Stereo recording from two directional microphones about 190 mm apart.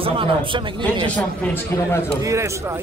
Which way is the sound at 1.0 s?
5° left (ahead or behind).